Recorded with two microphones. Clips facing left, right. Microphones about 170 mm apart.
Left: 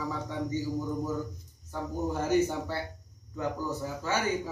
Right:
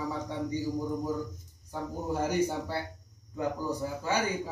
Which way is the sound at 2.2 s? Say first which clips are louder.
Left 3 dB; 10° right (ahead or behind).